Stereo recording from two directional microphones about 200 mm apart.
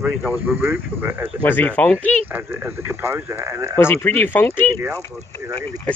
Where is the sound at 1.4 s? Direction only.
10° left (ahead or behind).